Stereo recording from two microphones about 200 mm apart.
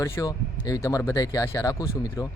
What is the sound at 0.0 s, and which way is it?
Speech, 15° left (ahead or behind).